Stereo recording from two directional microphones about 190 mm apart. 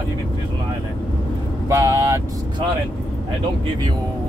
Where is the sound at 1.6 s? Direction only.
15° right (ahead or behind).